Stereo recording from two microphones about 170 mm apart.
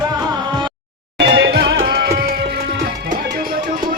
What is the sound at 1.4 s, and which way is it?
Music, 80° right.